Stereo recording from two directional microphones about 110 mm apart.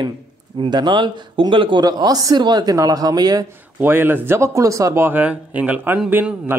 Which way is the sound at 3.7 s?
20° right (ahead or behind).